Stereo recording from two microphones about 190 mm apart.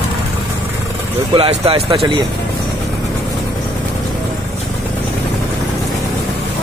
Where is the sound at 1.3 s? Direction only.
30° right (ahead or behind).